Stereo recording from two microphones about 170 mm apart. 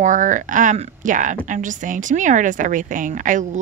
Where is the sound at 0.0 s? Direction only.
50° right (ahead or behind).